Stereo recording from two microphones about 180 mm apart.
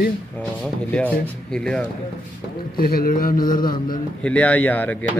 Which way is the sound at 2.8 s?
55° left (ahead or behind).